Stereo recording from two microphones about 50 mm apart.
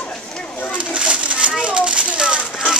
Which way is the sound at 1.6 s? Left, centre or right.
Centre.